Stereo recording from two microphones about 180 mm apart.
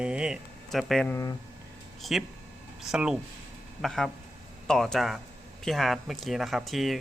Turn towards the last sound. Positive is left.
turn(degrees=0)  # may be behind; listen again after turning